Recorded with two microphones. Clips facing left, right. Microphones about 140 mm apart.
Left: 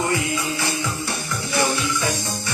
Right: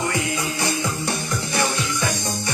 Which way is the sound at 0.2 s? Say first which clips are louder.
Even; 20° right (ahead or behind).